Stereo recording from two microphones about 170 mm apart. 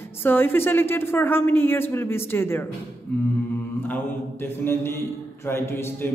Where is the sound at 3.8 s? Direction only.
10° left (ahead or behind).